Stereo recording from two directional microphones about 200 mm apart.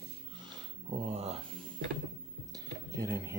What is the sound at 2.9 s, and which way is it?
Speech, 15° right (ahead or behind).